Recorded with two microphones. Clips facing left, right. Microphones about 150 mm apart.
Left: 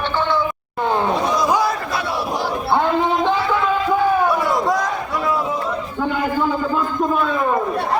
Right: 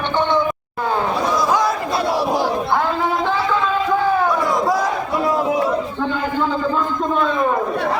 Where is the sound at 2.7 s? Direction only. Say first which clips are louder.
Left 2 dB; 20° left (ahead or behind).